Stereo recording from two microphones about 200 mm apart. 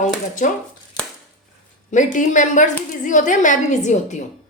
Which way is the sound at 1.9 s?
40° left (ahead or behind).